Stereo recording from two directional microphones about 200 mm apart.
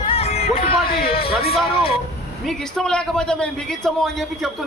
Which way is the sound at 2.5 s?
Centre (ahead or behind).